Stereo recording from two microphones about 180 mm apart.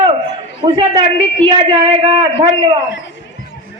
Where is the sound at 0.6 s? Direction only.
25° right (ahead or behind).